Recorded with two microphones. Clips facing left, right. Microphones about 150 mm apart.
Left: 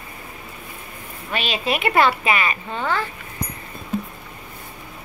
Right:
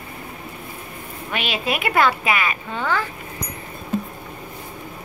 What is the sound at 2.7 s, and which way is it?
Speech, 15° left (ahead or behind).